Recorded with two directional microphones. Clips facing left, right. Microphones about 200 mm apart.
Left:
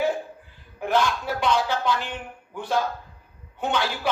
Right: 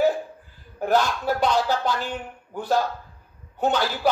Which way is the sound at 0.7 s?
40° right (ahead or behind).